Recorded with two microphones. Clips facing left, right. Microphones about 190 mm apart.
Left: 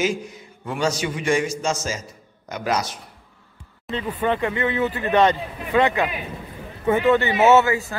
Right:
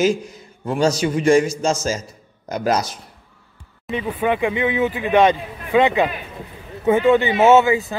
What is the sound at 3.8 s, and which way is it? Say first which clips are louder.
Speech: right 2 dB; 10° right (ahead or behind).